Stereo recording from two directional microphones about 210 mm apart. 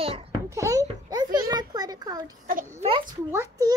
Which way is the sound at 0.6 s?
15° right (ahead or behind).